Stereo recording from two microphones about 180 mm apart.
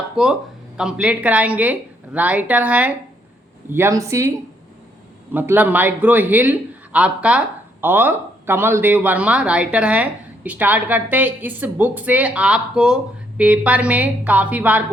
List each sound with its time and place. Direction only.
0.2 s a man's voice: 5° right (ahead or behind)
5.3 s a man's voice: 10° right (ahead or behind)